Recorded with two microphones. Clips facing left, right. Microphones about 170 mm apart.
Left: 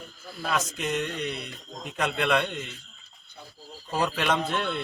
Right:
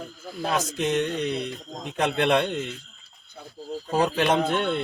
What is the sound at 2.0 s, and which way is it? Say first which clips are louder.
Speech: right 4 dB; 30° right (ahead or behind).